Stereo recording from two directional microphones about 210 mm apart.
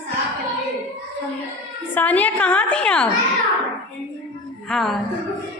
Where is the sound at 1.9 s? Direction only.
5° left (ahead or behind).